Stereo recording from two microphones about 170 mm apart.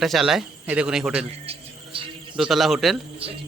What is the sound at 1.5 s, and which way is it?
Music, 30° right (ahead or behind).